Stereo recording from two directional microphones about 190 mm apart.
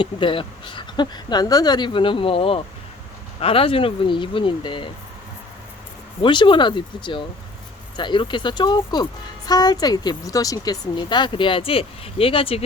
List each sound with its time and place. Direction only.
0.0 s speech: 25° left (ahead or behind)
6.2 s speech: 25° left (ahead or behind)